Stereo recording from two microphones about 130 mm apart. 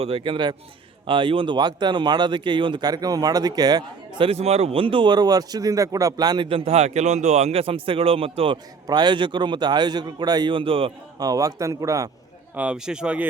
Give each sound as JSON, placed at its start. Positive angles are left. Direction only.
{"t": 0.0, "sound": "speech", "side_deg": -45}
{"t": 4.3, "sound": "speech", "side_deg": -50}
{"t": 8.9, "sound": "speech", "side_deg": -35}
{"t": 11.2, "sound": "speech", "side_deg": -30}
{"t": 12.5, "sound": "speech", "side_deg": -5}